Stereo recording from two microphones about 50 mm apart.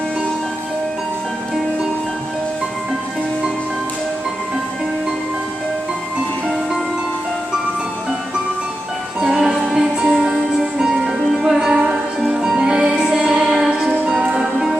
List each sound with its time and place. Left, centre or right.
9.2 s music: centre